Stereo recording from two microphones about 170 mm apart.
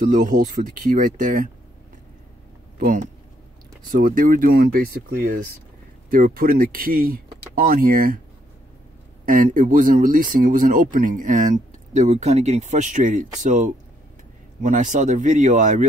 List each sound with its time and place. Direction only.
0.0 s speech: 50° right (ahead or behind)
2.8 s speech: 50° right (ahead or behind)
9.2 s speech: 50° right (ahead or behind)